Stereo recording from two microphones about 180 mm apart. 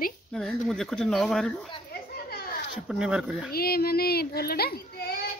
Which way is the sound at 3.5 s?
60° left (ahead or behind).